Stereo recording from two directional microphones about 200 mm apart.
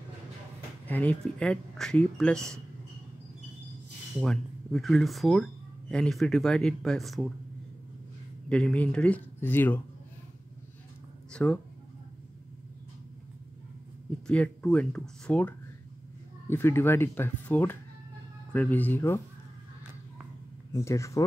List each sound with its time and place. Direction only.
0.8 s speech: 10° left (ahead or behind)
4.2 s speech: centre (ahead or behind)
8.5 s speech: 5° left (ahead or behind)
11.3 s speech: 5° left (ahead or behind)
14.2 s speech: 5° left (ahead or behind)
20.7 s speech: 15° left (ahead or behind)